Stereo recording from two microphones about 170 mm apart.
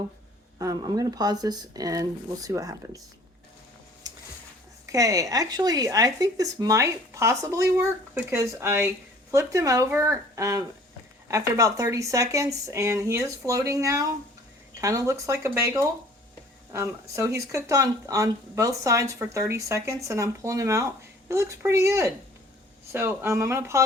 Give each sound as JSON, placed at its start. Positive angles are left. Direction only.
{"t": 0.6, "sound": "speech", "side_deg": -20}
{"t": 4.1, "sound": "a sound", "side_deg": -20}
{"t": 4.9, "sound": "speech", "side_deg": -20}